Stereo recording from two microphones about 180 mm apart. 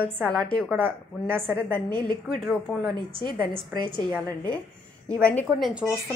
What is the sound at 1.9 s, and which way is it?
Speech, 25° right (ahead or behind).